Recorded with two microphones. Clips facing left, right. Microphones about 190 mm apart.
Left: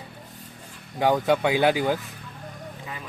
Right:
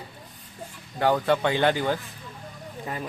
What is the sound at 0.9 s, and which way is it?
A man's voice, 15° left (ahead or behind).